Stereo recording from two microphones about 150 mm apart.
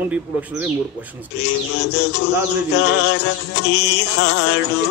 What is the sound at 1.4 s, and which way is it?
Music, 90° left.